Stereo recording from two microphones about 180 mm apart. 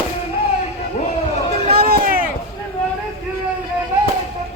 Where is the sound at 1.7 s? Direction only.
55° right (ahead or behind).